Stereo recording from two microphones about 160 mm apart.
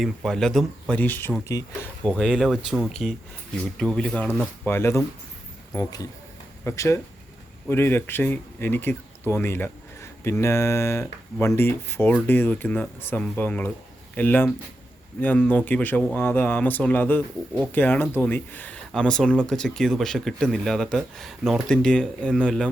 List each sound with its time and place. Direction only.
0.0 s speech: centre (ahead or behind)
6.7 s speech: 15° left (ahead or behind)